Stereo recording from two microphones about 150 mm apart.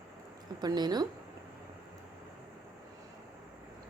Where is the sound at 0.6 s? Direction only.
25° right (ahead or behind).